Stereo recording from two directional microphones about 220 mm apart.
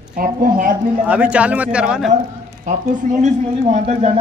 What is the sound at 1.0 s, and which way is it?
Speech, 5° right (ahead or behind).